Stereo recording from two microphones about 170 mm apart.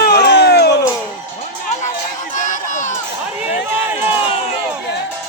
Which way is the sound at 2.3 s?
50° left (ahead or behind).